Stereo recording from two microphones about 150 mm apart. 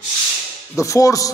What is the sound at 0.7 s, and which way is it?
Speech, 20° left (ahead or behind).